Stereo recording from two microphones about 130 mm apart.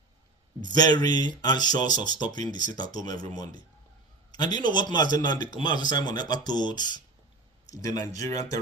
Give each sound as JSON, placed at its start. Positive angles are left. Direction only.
{"t": 0.7, "sound": "a man's voice", "side_deg": 30}